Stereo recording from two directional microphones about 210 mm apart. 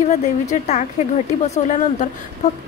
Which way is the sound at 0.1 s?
35° left (ahead or behind).